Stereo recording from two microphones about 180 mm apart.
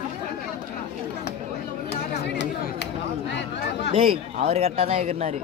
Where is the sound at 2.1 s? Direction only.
70° left (ahead or behind).